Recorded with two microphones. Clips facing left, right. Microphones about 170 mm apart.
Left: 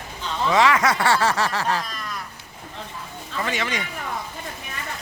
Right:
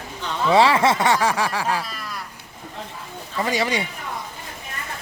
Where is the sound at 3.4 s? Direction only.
35° right (ahead or behind).